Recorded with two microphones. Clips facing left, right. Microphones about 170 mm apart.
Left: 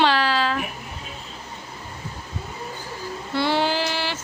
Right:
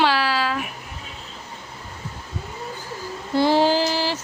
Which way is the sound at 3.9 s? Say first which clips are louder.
Right 4 dB; 35° right (ahead or behind).